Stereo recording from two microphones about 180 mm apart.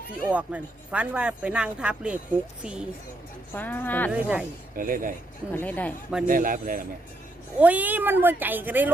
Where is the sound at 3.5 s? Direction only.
10° left (ahead or behind).